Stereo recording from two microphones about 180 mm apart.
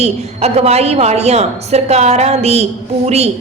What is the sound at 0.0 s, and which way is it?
A woman's voice, 35° right (ahead or behind).